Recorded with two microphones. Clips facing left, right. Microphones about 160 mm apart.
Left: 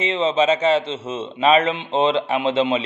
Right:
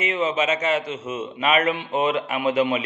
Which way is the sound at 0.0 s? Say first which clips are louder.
Left 4 dB; 30° left (ahead or behind).